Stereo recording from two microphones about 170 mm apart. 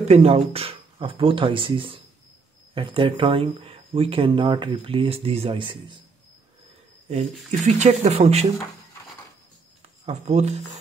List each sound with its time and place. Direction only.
0.1 s speech: 35° right (ahead or behind)
7.1 s speech: 40° right (ahead or behind)
10.0 s speech: 40° right (ahead or behind)